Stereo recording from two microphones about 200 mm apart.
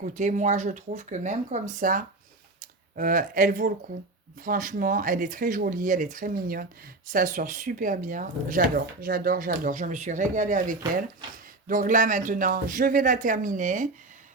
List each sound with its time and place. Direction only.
0.2 s speech: 35° right (ahead or behind)